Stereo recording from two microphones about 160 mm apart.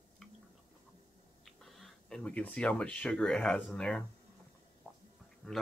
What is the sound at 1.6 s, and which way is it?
Speech, centre (ahead or behind).